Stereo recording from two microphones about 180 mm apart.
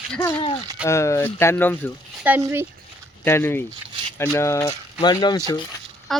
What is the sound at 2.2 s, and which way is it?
Speech, 10° right (ahead or behind).